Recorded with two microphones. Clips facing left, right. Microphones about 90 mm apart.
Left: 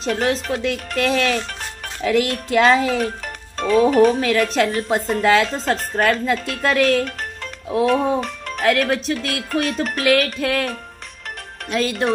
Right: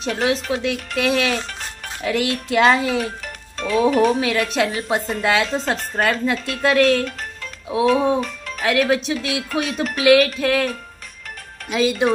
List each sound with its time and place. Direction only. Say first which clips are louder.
0.0 s speech: left 1 dB; 5° right (ahead or behind)
3.5 s music: left 4 dB; 50° left (ahead or behind)
4.2 s speech: left 2 dB; 5° right (ahead or behind)
9.6 s music: left 2 dB; 5° right (ahead or behind)
9.9 s speech: right 5 dB; 5° right (ahead or behind)
11.7 s speech: right 2 dB; 5° right (ahead or behind)